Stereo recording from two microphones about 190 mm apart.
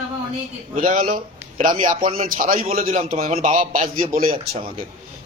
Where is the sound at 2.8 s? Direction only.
35° right (ahead or behind).